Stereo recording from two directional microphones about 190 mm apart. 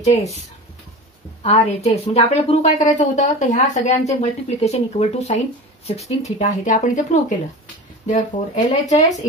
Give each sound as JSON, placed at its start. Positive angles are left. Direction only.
{"t": 0.0, "sound": "a woman's voice", "side_deg": 35}
{"t": 1.4, "sound": "a woman's voice", "side_deg": 35}